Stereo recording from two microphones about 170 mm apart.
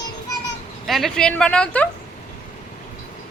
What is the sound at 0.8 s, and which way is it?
A woman's voice, centre (ahead or behind).